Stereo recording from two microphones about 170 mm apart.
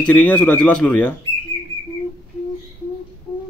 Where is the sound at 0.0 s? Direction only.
10° left (ahead or behind).